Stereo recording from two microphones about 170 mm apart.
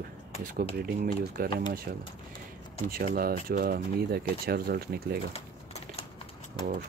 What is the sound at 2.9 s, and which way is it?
Speech, 60° right (ahead or behind).